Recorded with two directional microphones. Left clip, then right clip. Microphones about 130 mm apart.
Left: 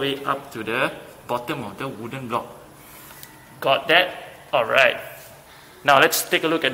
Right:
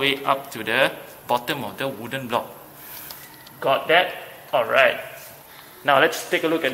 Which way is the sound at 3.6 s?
10° left (ahead or behind).